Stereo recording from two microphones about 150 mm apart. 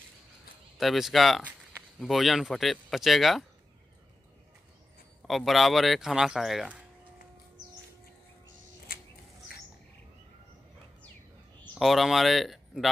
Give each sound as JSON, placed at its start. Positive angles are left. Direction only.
{"t": 0.7, "sound": "speech", "side_deg": 0}
{"t": 5.2, "sound": "speech", "side_deg": 0}
{"t": 8.9, "sound": "a sound", "side_deg": 80}
{"t": 11.6, "sound": "speech", "side_deg": 5}